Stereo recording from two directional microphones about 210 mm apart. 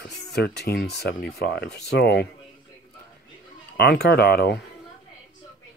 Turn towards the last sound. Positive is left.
turn(degrees=50)  # may be behind; listen again after turning